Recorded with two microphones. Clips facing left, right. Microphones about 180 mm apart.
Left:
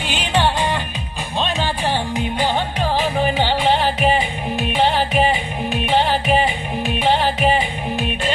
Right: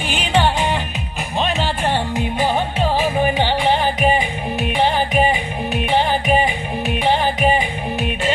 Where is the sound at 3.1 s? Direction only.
5° right (ahead or behind).